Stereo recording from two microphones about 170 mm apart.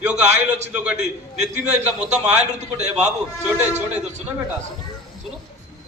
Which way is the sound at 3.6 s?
10° right (ahead or behind).